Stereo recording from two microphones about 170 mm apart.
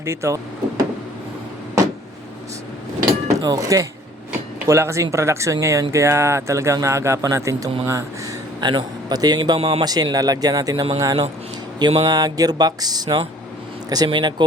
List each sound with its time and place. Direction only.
0.0 s speech: 15° right (ahead or behind)
3.3 s a man's voice: 20° right (ahead or behind)
9.8 s a man's voice: 25° right (ahead or behind)
11.8 s a sound: 35° right (ahead or behind)
12.0 s a man's voice: 20° right (ahead or behind)